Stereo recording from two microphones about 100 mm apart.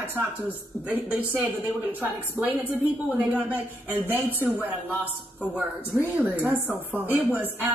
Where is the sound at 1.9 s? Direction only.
20° right (ahead or behind).